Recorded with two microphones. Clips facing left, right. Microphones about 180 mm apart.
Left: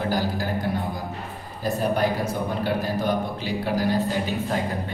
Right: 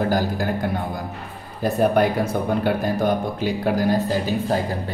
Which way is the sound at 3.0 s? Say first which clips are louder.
Right 4 dB; 50° right (ahead or behind).